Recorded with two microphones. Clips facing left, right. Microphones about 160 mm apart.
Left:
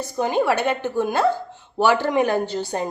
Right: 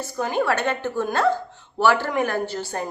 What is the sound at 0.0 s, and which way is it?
A woman's voice, 20° left (ahead or behind).